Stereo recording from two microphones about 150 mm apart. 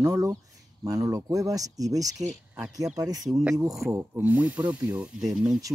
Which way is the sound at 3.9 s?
10° right (ahead or behind).